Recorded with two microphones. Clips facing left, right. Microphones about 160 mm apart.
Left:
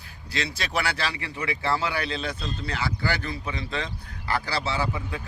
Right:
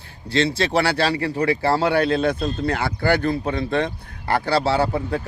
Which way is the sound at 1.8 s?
60° right (ahead or behind).